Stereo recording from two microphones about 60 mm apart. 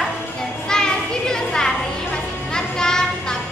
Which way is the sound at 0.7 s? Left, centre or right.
Centre.